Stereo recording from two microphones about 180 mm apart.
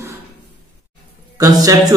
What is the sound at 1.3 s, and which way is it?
Speech, 20° right (ahead or behind).